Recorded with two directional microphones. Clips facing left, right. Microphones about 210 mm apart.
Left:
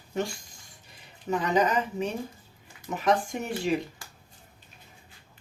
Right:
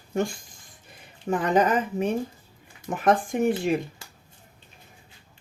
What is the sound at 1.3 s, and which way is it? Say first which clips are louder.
Speech: right 3 dB; 50° right (ahead or behind).